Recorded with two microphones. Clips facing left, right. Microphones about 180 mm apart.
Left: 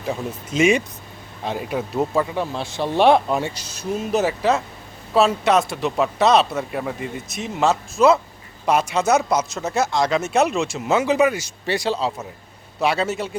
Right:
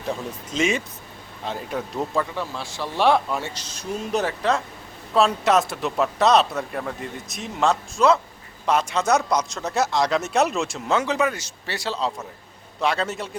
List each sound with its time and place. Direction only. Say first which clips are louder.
0.1 s speech: left 3 dB; 10° left (ahead or behind)
2.3 s speech: left 5 dB; 20° left (ahead or behind); by 13.3 s 5° left (ahead or behind)